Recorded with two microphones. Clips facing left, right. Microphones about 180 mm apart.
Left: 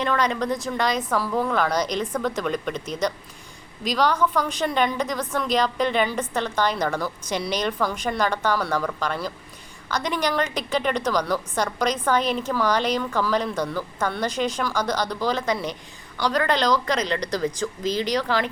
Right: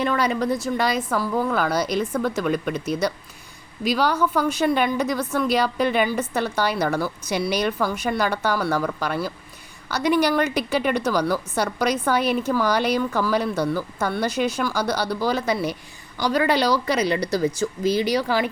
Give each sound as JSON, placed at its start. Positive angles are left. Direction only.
{"t": 0.0, "sound": "a woman's voice", "side_deg": -5}